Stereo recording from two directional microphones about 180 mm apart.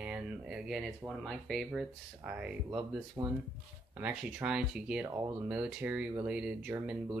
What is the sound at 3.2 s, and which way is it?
Speech, 20° right (ahead or behind).